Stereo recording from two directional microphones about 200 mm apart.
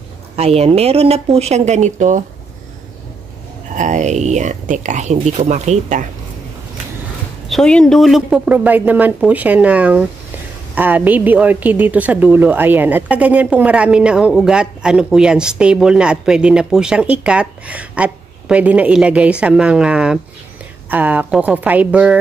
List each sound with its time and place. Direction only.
0.4 s speech: 30° right (ahead or behind)
3.7 s speech: 35° right (ahead or behind)
7.4 s a woman's voice: 5° left (ahead or behind)